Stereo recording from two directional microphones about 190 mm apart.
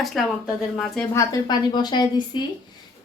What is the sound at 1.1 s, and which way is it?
A woman's voice, 15° left (ahead or behind).